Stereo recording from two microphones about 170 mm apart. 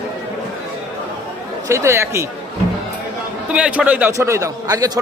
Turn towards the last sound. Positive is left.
turn(degrees=-20)  # may be behind; listen again after turning